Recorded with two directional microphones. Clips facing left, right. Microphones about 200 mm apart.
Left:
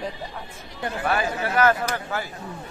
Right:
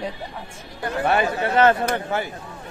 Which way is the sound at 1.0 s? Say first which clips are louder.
Right 4 dB; 25° right (ahead or behind).